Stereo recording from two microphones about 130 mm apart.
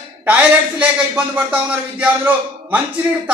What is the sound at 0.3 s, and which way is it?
A man's voice, 10° right (ahead or behind).